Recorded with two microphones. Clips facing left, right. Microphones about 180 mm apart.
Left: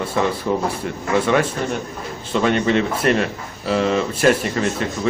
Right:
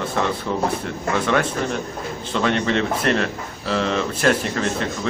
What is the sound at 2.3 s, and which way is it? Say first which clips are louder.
Speech: left 3 dB; 5° left (ahead or behind).